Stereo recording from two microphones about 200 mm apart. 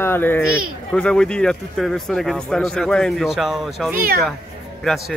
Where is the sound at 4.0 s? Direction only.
50° right (ahead or behind).